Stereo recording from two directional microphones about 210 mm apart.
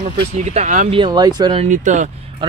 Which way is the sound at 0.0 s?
30° right (ahead or behind).